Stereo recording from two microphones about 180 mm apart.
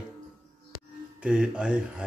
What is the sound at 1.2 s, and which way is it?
Speech, 5° right (ahead or behind).